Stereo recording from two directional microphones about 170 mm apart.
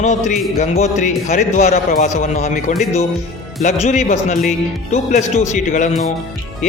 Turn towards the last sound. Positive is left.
turn(degrees=45)  # may be behind; listen again after turning